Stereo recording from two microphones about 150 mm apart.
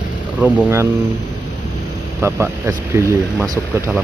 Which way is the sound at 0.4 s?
15° right (ahead or behind).